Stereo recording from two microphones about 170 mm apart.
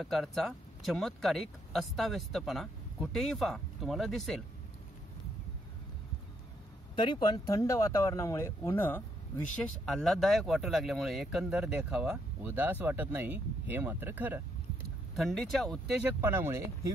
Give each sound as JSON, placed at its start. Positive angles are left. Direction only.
{"t": 0.0, "sound": "speech", "side_deg": 0}
{"t": 7.0, "sound": "speech", "side_deg": 25}
{"t": 15.1, "sound": "speech", "side_deg": 0}